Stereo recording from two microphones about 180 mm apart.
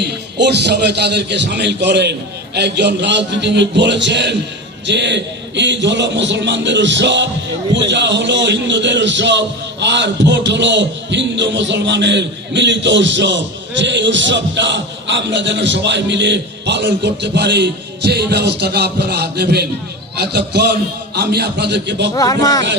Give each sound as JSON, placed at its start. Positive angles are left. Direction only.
{"t": 0.0, "sound": "a man's voice", "side_deg": -70}
{"t": 22.1, "sound": "speech", "side_deg": 20}